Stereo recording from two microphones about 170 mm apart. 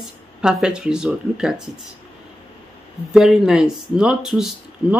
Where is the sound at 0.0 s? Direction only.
5° right (ahead or behind).